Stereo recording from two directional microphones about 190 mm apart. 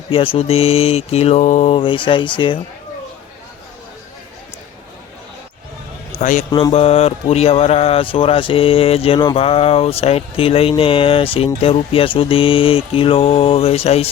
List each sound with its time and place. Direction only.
0.1 s mantra: 30° left (ahead or behind)
6.1 s a man's voice: 40° left (ahead or behind)
6.5 s speech: 25° left (ahead or behind)